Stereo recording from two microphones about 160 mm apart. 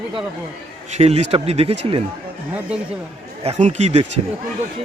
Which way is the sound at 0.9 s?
40° right (ahead or behind).